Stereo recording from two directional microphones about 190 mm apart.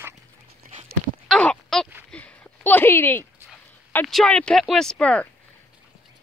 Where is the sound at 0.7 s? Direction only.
35° right (ahead or behind).